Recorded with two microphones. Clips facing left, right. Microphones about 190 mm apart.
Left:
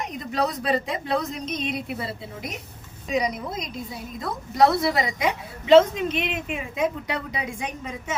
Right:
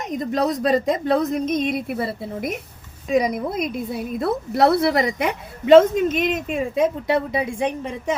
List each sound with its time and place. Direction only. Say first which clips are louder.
0.0 s a woman's voice: right 5 dB; 45° right (ahead or behind)